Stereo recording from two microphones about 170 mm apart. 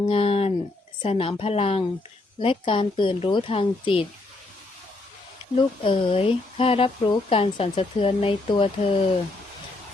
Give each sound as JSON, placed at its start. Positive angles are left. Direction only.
{"t": 0.0, "sound": "speech", "side_deg": 35}
{"t": 5.5, "sound": "speech", "side_deg": 30}